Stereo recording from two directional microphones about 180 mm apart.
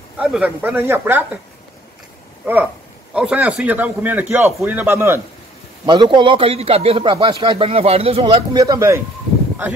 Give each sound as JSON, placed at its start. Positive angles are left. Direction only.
{"t": 0.2, "sound": "speech", "side_deg": -5}
{"t": 2.4, "sound": "speech", "side_deg": -10}
{"t": 5.9, "sound": "speech", "side_deg": -25}